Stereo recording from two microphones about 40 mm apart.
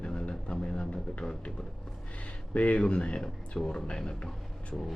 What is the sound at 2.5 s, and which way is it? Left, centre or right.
Speech, left.